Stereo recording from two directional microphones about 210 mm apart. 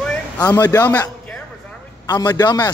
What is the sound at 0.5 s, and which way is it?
Speech, 10° left (ahead or behind).